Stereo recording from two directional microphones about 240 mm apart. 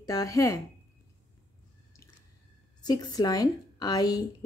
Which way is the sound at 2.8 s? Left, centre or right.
Centre.